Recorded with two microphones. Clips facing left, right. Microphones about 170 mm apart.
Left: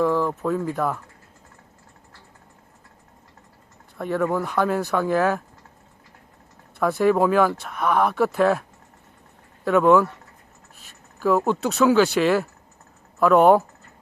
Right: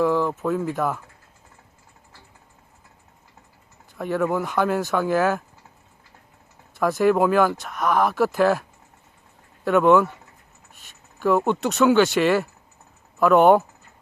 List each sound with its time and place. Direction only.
0.0 s speech: centre (ahead or behind)
3.9 s speech: centre (ahead or behind)
6.7 s speech: centre (ahead or behind)
9.6 s speech: centre (ahead or behind)